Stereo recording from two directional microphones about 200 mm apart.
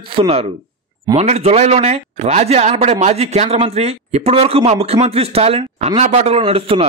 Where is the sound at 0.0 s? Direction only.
30° right (ahead or behind).